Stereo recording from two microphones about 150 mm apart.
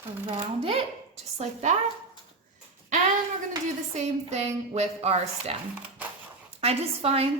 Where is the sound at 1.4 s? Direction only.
50° right (ahead or behind).